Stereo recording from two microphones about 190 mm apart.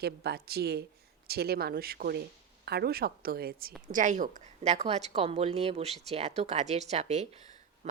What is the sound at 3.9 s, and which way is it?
A woman's voice, 40° right (ahead or behind).